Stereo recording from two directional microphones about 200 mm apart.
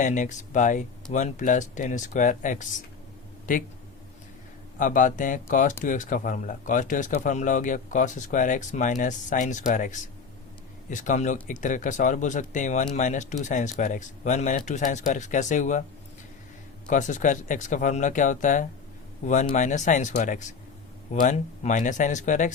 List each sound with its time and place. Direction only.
0.0 s speech: 40° left (ahead or behind)
4.8 s speech: 40° left (ahead or behind)
16.9 s speech: 40° left (ahead or behind)